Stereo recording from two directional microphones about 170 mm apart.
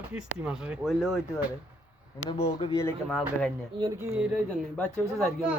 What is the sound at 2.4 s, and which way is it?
Speech, 35° left (ahead or behind).